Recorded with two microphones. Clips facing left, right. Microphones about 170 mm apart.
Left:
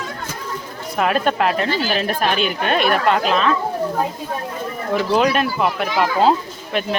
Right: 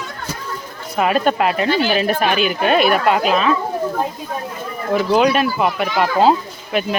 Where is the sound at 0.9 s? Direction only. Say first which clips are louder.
Right 2 dB; centre (ahead or behind).